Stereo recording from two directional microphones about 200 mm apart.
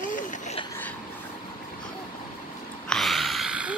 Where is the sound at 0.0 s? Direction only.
40° left (ahead or behind).